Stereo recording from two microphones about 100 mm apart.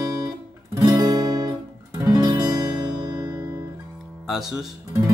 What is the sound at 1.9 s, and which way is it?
Music, 40° right (ahead or behind).